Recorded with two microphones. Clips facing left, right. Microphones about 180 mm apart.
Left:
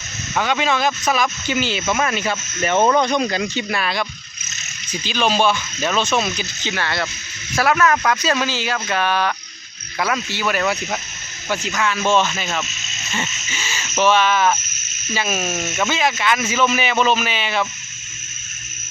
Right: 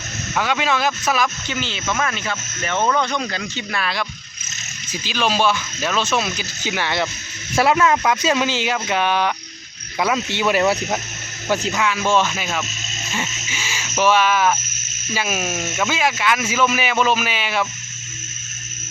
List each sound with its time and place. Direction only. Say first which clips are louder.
0.3 s speech: left 1 dB; 5° right (ahead or behind)
1.5 s speech: left 5 dB; 10° left (ahead or behind); by 11.0 s 25° right (ahead or behind)
11.7 s speech: left 3 dB; 10° right (ahead or behind)